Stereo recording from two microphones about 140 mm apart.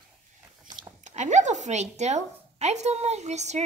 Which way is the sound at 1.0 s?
60° right (ahead or behind).